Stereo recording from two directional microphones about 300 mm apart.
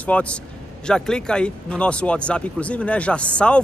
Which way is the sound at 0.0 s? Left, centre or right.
Centre.